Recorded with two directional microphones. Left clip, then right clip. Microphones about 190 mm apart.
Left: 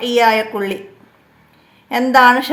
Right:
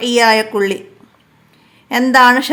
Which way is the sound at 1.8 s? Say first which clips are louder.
Right 1 dB; 25° right (ahead or behind).